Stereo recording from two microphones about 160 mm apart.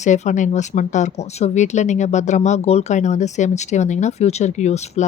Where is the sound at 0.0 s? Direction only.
50° left (ahead or behind).